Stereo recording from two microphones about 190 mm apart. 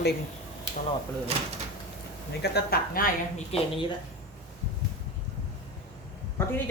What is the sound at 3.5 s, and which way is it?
Speech, 30° left (ahead or behind).